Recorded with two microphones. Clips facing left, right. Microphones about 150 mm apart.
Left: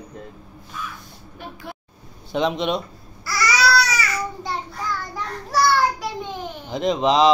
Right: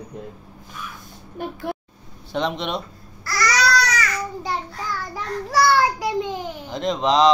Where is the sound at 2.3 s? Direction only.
Centre (ahead or behind).